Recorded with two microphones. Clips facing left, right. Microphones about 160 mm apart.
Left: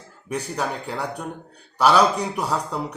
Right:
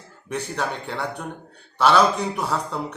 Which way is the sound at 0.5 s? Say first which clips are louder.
Left 1 dB; 10° left (ahead or behind).